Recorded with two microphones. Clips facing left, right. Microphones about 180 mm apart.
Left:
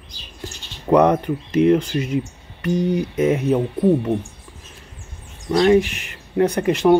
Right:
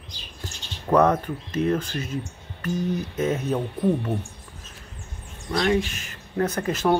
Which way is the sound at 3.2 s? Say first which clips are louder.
Left 7 dB; 15° left (ahead or behind).